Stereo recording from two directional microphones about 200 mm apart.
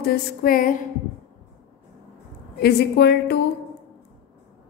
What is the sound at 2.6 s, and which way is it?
Speech, 55° left (ahead or behind).